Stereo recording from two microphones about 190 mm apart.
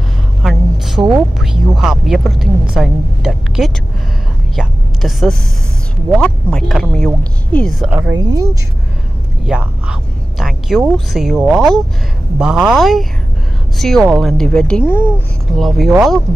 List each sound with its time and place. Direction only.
0.4 s a sound: centre (ahead or behind)
1.4 s a woman's voice: 5° right (ahead or behind)
8.2 s speech: 20° right (ahead or behind)
9.5 s a woman's voice: 5° right (ahead or behind); by 15.2 s 10° left (ahead or behind)
15.5 s a woman's voice: centre (ahead or behind)